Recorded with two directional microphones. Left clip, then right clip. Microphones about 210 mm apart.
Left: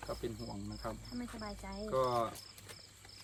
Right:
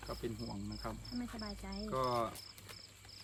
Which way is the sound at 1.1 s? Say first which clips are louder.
Even; 5° left (ahead or behind).